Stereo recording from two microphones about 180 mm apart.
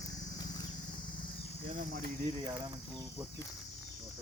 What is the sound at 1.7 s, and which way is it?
Cricket, 50° right (ahead or behind).